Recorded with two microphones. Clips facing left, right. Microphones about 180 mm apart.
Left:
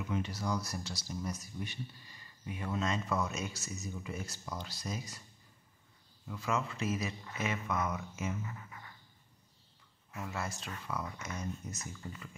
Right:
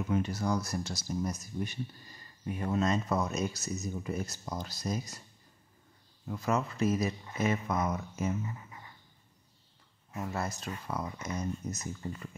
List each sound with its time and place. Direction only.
0.1 s speech: 45° right (ahead or behind)
6.2 s speech: 40° right (ahead or behind)
8.5 s a sound: 25° right (ahead or behind)
10.1 s speech: 35° right (ahead or behind)